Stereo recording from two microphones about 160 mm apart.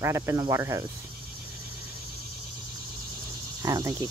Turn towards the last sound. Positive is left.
turn(degrees=-25)  # may be behind; listen again after turning